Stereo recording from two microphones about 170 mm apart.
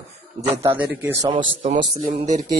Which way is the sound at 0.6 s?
10° right (ahead or behind).